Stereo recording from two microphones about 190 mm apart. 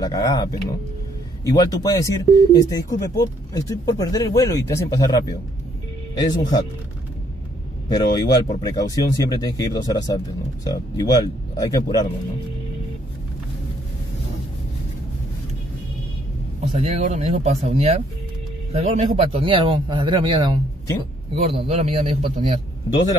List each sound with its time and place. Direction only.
0.0 s speech: 20° left (ahead or behind)
7.9 s speech: 20° left (ahead or behind)
16.6 s a man's voice: 35° right (ahead or behind)